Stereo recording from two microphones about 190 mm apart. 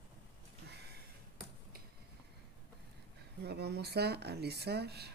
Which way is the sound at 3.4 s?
60° right (ahead or behind).